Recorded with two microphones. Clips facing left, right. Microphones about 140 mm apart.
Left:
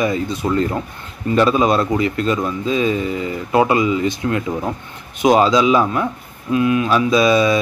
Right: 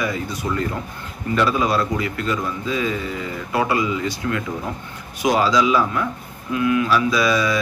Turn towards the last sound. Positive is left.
turn(degrees=20)  # may be behind; listen again after turning